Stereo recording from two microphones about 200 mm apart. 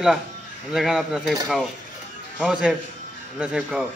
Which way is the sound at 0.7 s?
Centre (ahead or behind).